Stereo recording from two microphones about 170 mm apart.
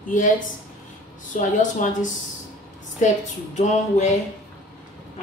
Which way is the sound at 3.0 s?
45° left (ahead or behind).